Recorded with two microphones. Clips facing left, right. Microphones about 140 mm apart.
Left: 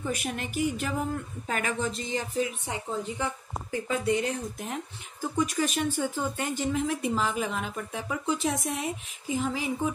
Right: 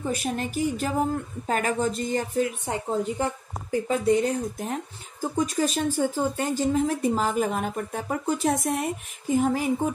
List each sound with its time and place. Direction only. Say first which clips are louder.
0.0 s speech: right 4 dB; 35° right (ahead or behind); by 2.5 s 50° right (ahead or behind)
2.6 s speech: right 6 dB; 40° right (ahead or behind)